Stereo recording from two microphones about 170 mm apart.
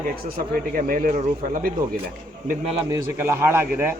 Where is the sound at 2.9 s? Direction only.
15° right (ahead or behind).